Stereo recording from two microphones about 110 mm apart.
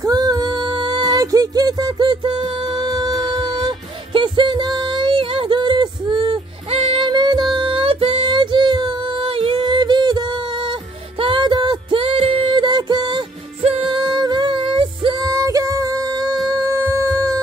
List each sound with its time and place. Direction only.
0.0 s music: 35° right (ahead or behind)
6.7 s music: 60° right (ahead or behind)
7.1 s music: 40° right (ahead or behind)
13.6 s music: 60° right (ahead or behind)
13.9 s music: 40° right (ahead or behind)
15.1 s music: 35° right (ahead or behind)